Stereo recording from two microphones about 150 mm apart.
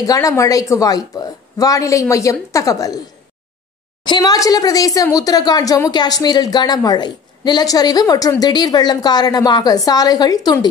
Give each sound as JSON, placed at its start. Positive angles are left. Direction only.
{"t": 0.0, "sound": "speech", "side_deg": 20}
{"t": 4.0, "sound": "speech", "side_deg": 25}